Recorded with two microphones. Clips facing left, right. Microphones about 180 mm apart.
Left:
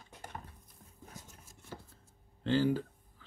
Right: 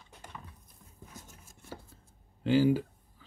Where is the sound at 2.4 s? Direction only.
10° right (ahead or behind).